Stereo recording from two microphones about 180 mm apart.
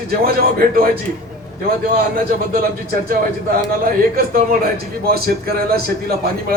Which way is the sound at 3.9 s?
55° right (ahead or behind).